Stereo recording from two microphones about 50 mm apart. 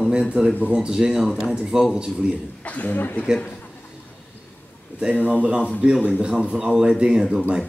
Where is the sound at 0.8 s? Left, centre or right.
Centre.